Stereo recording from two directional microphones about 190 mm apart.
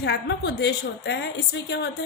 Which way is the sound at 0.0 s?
60° left (ahead or behind).